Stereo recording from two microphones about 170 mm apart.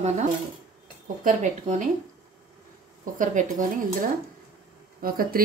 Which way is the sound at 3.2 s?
50° right (ahead or behind).